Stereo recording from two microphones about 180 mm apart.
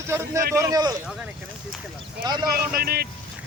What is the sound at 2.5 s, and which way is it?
Speech, 55° right (ahead or behind).